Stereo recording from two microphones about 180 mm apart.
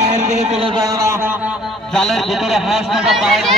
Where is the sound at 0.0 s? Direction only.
40° right (ahead or behind).